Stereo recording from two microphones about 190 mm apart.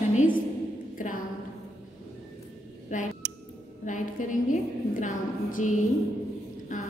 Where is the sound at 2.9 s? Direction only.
40° left (ahead or behind).